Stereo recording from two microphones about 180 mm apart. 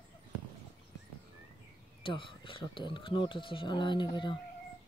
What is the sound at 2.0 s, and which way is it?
Speech, 30° left (ahead or behind).